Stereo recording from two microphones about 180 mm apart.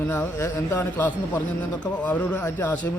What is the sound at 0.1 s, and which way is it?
A man's voice, 15° left (ahead or behind).